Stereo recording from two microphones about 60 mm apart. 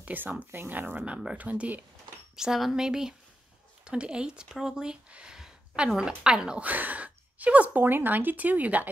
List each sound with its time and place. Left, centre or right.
0.0 s speech: right
1.0 s speech: centre
2.3 s speech: centre
6.6 s speech: right